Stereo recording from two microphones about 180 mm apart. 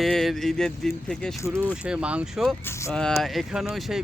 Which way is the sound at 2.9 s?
5° left (ahead or behind).